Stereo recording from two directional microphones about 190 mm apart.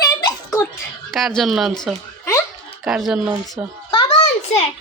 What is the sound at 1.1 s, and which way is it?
Speech, centre (ahead or behind).